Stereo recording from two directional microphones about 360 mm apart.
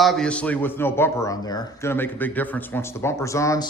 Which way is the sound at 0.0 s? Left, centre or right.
Centre.